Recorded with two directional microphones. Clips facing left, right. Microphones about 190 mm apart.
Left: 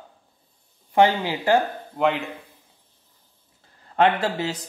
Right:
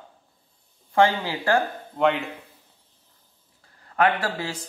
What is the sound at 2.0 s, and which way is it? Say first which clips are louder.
Speech: even; centre (ahead or behind).